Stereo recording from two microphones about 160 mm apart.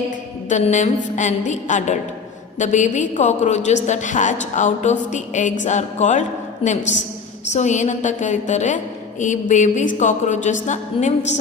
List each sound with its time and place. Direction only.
0.4 s a woman's voice: 50° left (ahead or behind)
6.6 s a woman's voice: 35° left (ahead or behind)